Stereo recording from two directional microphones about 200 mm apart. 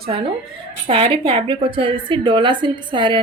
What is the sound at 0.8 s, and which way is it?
A woman's voice, 25° right (ahead or behind).